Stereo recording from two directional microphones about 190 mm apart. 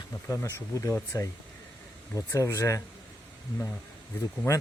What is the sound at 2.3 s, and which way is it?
Speech, 15° left (ahead or behind).